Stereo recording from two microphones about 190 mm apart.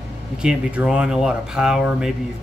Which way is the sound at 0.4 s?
5° right (ahead or behind).